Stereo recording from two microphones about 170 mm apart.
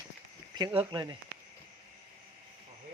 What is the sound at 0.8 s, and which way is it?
Speech, 25° right (ahead or behind).